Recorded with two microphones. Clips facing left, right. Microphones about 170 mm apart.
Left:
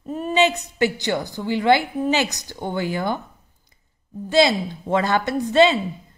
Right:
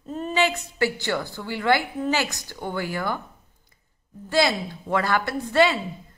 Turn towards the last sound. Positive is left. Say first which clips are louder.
# left 4 dB
turn(degrees=20)  # may be behind; listen again after turning